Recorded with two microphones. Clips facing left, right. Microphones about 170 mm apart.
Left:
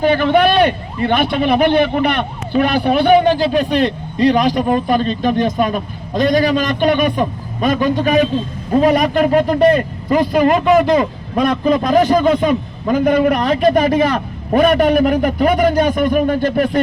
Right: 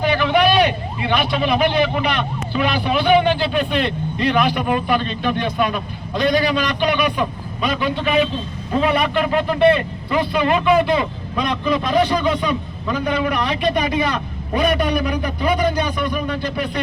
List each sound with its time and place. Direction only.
0.0 s a man's voice: 45° left (ahead or behind)